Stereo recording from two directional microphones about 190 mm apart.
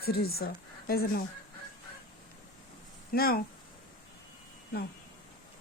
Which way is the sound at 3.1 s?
50° left (ahead or behind).